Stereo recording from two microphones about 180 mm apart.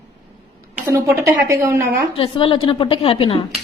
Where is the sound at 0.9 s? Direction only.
15° right (ahead or behind).